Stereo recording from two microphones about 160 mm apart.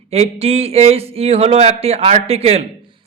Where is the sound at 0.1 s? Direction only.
40° right (ahead or behind).